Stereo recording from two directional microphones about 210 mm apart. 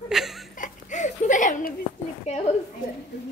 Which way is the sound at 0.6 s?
35° left (ahead or behind).